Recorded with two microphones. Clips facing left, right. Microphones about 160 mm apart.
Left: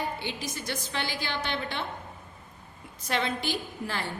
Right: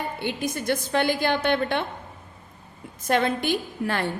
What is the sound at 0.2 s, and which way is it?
A woman's voice, 55° right (ahead or behind).